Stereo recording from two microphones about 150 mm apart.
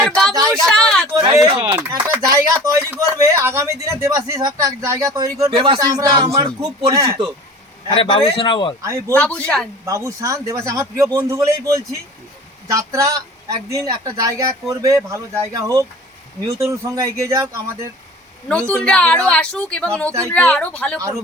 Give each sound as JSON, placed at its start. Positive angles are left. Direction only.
{"t": 0.0, "sound": "speech", "side_deg": 0}
{"t": 0.3, "sound": "a sound", "side_deg": -20}
{"t": 0.6, "sound": "a sound", "side_deg": 5}
{"t": 1.3, "sound": "speech", "side_deg": -25}
{"t": 7.9, "sound": "a man's voice", "side_deg": 35}
{"t": 8.8, "sound": "speech", "side_deg": -20}
{"t": 9.1, "sound": "speech", "side_deg": 10}
{"t": 9.8, "sound": "speech", "side_deg": -20}
{"t": 18.4, "sound": "speech", "side_deg": 5}